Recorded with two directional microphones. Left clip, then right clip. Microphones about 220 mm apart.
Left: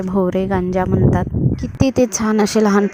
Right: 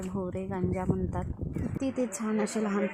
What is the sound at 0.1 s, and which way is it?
Speech, 40° left (ahead or behind).